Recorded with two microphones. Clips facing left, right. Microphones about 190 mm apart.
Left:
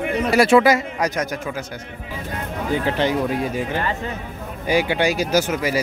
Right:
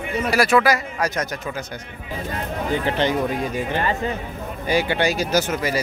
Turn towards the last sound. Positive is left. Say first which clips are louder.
# left 1 dB
turn(degrees=10)  # may be behind; listen again after turning